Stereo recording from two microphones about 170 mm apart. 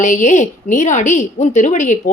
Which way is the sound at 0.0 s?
45° left (ahead or behind).